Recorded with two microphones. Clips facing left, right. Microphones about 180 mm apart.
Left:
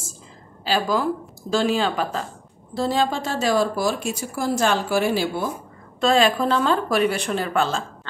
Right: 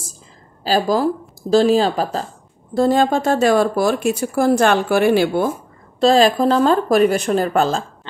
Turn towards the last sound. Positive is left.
turn(degrees=-40)  # may be behind; listen again after turning